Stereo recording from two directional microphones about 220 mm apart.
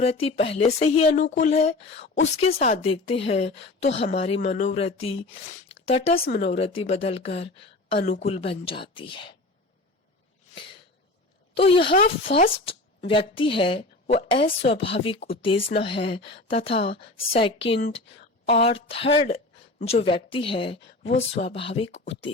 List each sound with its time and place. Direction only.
0.0 s speech: 25° left (ahead or behind)
6.2 s speech: 40° left (ahead or behind)
6.5 s speech: 30° left (ahead or behind)
11.5 s speech: 25° left (ahead or behind)